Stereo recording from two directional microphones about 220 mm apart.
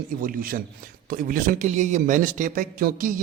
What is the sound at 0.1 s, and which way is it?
A man's voice, 40° right (ahead or behind).